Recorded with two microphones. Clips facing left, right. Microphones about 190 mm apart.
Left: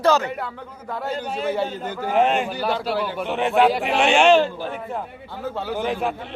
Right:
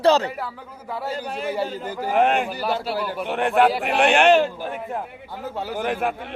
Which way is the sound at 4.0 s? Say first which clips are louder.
Even; 55° right (ahead or behind).